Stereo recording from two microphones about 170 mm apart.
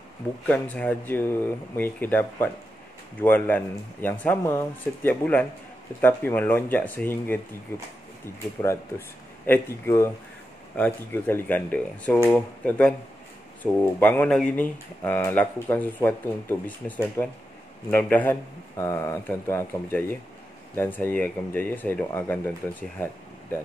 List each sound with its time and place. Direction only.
0.5 s speech: 10° left (ahead or behind)
8.5 s speech: 15° left (ahead or behind)